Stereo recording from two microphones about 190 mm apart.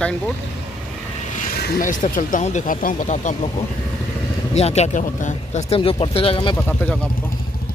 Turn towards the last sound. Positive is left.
turn(degrees=10)  # may be behind; listen again after turning